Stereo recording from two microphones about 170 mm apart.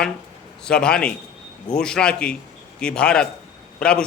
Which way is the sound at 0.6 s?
5° left (ahead or behind).